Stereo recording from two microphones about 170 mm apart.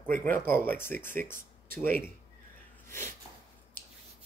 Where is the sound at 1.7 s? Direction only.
55° right (ahead or behind).